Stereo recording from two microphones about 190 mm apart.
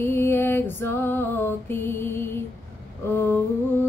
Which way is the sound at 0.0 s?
10° left (ahead or behind).